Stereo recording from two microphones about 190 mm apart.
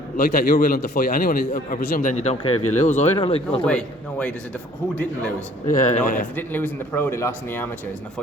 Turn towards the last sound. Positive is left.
turn(degrees=15)  # may be behind; listen again after turning